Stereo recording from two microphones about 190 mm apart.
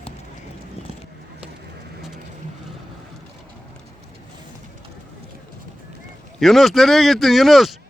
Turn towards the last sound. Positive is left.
turn(degrees=0)  # may be behind; listen again after turning